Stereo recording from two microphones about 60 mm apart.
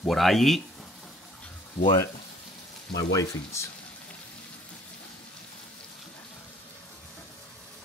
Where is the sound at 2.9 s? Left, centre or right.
Left.